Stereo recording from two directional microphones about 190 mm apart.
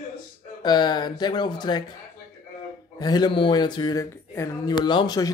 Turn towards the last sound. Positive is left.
turn(degrees=25)  # may be behind; listen again after turning